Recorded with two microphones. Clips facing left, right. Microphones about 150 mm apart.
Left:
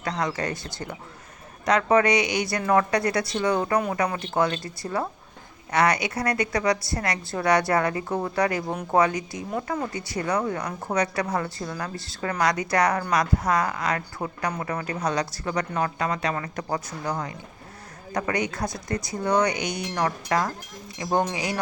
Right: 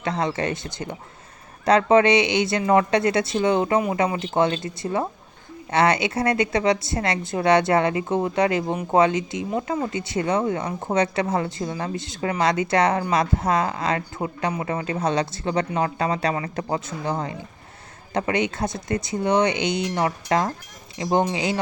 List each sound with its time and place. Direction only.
0.0 s a woman's voice: 25° right (ahead or behind)
14.2 s a woman's voice: 15° right (ahead or behind)